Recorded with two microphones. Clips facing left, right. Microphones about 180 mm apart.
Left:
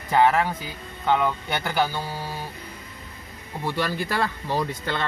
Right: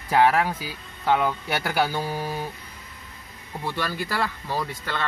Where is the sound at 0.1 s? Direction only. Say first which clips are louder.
Even; 5° right (ahead or behind).